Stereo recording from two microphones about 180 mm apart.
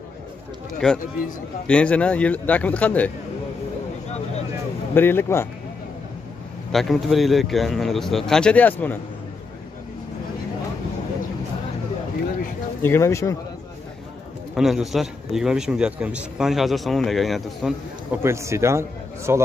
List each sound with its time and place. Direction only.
0.8 s a man's voice: 5° left (ahead or behind)
4.9 s speech: 10° left (ahead or behind)
6.7 s a man's voice: centre (ahead or behind)
12.8 s speech: 15° left (ahead or behind)
14.5 s a man's voice: centre (ahead or behind)
18.2 s speech: 15° right (ahead or behind)